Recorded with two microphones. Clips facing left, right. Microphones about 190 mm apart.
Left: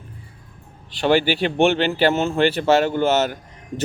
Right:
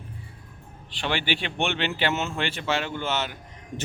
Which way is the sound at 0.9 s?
40° left (ahead or behind).